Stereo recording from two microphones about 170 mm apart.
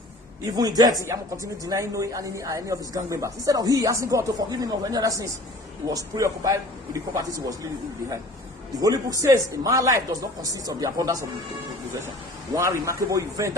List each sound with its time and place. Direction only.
0.5 s speech: 20° right (ahead or behind)
8.8 s speech: 20° right (ahead or behind)
12.5 s speech: 20° right (ahead or behind)